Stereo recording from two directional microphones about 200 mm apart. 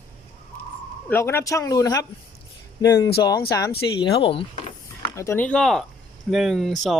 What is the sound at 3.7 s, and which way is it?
Speech, 25° left (ahead or behind).